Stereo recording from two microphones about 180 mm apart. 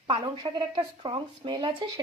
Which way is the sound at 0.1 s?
30° right (ahead or behind).